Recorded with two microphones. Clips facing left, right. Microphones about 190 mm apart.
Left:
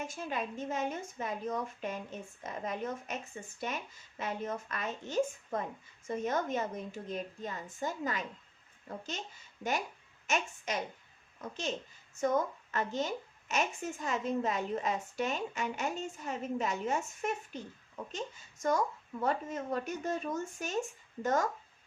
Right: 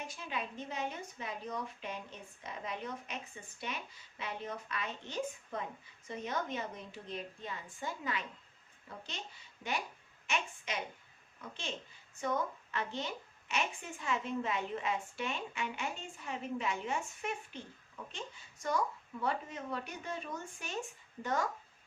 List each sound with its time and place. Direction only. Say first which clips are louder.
0.0 s a woman's voice: left 4 dB; 45° left (ahead or behind)
10.2 s a woman's voice: left 4 dB; 45° left (ahead or behind)
12.7 s a woman's voice: left 6 dB; 45° left (ahead or behind)